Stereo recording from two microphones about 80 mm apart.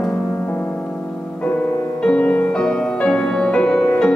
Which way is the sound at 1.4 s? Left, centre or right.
Centre.